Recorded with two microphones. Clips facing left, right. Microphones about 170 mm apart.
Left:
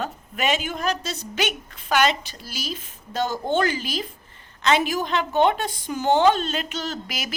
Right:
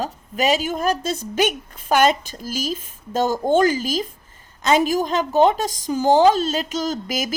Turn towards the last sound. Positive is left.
turn(degrees=-40)  # may be behind; listen again after turning